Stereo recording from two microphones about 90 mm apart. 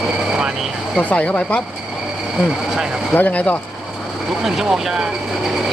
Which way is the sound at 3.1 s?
15° left (ahead or behind).